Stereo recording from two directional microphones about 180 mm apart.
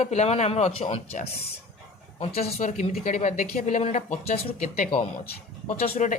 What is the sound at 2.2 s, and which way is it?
A man's voice, 35° left (ahead or behind).